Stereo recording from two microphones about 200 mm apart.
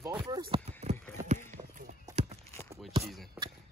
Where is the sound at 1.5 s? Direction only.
40° right (ahead or behind).